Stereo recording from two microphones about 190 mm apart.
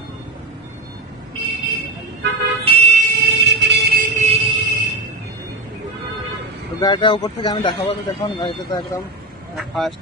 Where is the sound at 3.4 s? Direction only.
65° right (ahead or behind).